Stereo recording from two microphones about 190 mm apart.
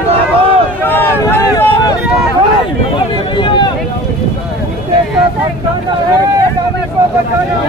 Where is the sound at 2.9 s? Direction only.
25° left (ahead or behind).